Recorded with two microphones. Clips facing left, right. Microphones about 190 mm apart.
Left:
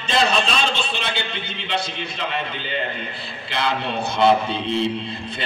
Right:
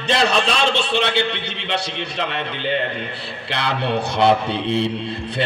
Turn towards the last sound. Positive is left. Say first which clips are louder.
# right 2 dB
turn(degrees=-70)  # may be behind; listen again after turning